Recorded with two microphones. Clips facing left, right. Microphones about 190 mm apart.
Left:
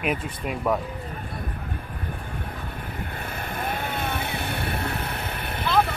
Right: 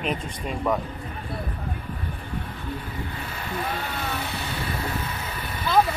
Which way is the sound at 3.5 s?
55° left (ahead or behind).